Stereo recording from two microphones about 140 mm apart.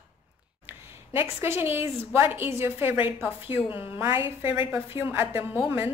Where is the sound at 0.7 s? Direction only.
15° right (ahead or behind).